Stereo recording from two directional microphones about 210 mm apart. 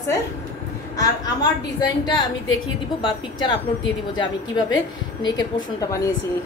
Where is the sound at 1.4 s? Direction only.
20° left (ahead or behind).